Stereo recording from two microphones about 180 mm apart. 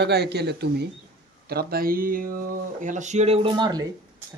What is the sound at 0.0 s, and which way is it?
Speech, 65° right (ahead or behind).